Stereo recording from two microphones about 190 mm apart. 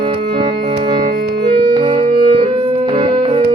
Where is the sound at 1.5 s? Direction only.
25° right (ahead or behind).